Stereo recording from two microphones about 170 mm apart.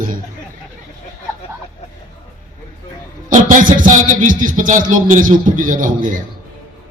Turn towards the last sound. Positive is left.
turn(degrees=-50)  # may be behind; listen again after turning